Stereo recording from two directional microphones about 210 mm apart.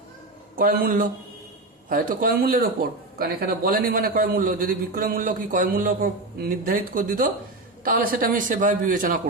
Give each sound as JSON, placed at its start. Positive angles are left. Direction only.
{"t": 0.5, "sound": "a man's voice", "side_deg": -45}